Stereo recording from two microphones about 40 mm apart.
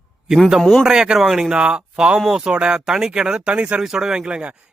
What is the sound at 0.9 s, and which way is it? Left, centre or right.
Speech, centre.